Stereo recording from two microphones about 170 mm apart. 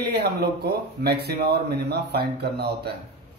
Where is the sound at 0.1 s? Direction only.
75° right (ahead or behind).